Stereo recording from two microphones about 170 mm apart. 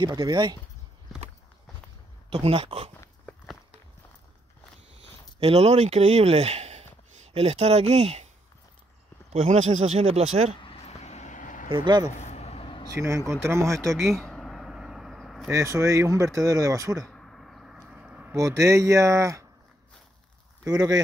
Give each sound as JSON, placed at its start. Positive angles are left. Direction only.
{"t": 0.0, "sound": "speech", "side_deg": -25}
{"t": 2.2, "sound": "speech", "side_deg": -35}
{"t": 5.4, "sound": "speech", "side_deg": -40}
{"t": 9.3, "sound": "speech", "side_deg": -40}
{"t": 10.6, "sound": "vehicle", "side_deg": 35}
{"t": 11.7, "sound": "speech", "side_deg": -25}
{"t": 12.2, "sound": "vehicle", "side_deg": 40}
{"t": 12.9, "sound": "speech", "side_deg": -15}
{"t": 14.2, "sound": "a sound", "side_deg": 5}
{"t": 15.5, "sound": "speech", "side_deg": -15}
{"t": 17.1, "sound": "a sound", "side_deg": 5}
{"t": 18.3, "sound": "speech", "side_deg": -20}
{"t": 20.6, "sound": "speech", "side_deg": -20}